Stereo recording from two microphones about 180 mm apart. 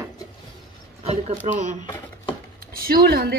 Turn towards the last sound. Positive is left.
turn(degrees=-60)  # may be behind; listen again after turning